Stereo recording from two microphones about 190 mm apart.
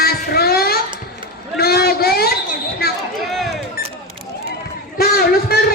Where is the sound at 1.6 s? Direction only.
55° left (ahead or behind).